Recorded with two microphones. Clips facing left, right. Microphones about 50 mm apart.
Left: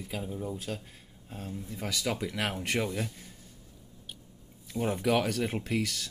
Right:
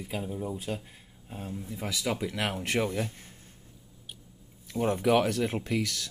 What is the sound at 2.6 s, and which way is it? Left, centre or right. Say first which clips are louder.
Speech: right 2 dB; right.